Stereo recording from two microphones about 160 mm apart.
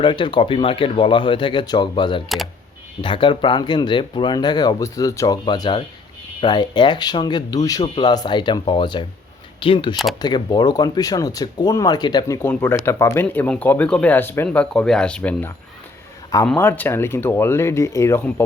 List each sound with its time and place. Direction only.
0.0 s speech: 30° left (ahead or behind)
12.4 s speech: 15° left (ahead or behind)